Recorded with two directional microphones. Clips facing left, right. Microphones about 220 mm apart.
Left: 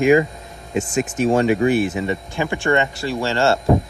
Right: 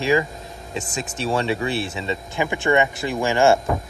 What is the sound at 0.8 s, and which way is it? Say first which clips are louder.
Speech: left 10 dB; 35° right (ahead or behind).